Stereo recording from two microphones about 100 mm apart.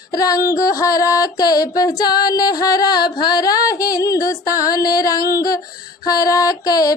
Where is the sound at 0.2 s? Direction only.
35° left (ahead or behind).